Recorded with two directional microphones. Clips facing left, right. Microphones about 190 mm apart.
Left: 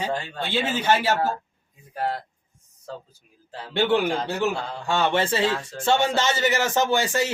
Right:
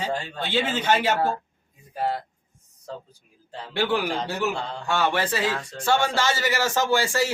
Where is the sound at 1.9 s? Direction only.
Centre (ahead or behind).